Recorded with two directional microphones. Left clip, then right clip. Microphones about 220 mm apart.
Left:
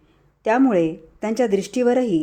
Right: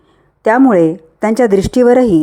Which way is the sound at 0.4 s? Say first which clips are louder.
Right 9 dB; 20° right (ahead or behind).